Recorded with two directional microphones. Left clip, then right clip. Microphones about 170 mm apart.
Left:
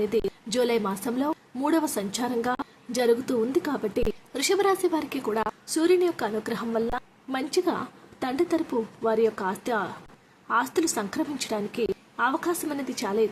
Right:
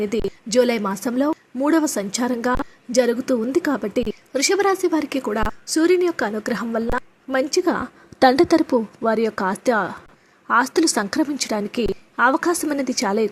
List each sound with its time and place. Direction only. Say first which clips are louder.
0.0 s a woman's voice: right 2 dB; 30° right (ahead or behind)
8.3 s a woman's voice: right 6 dB; 50° right (ahead or behind)